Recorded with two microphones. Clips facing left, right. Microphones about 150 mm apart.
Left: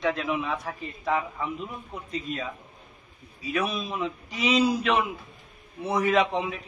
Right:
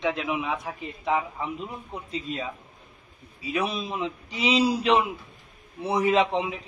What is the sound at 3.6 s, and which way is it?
A man's voice, 30° right (ahead or behind).